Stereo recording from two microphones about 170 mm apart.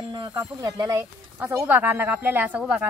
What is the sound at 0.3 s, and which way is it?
Speech, 15° right (ahead or behind).